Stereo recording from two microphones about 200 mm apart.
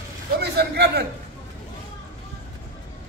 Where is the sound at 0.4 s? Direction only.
55° right (ahead or behind).